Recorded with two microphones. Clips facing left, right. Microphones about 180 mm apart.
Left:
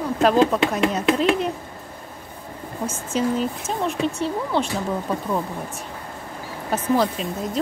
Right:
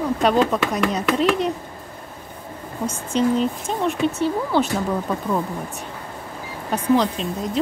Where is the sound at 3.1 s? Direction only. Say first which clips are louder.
Right 3 dB; 5° left (ahead or behind).